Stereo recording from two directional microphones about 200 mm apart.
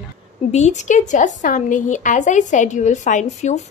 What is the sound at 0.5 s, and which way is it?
A woman's voice, 35° left (ahead or behind).